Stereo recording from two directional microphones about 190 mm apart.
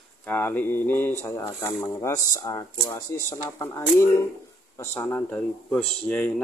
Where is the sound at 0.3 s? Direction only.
10° left (ahead or behind).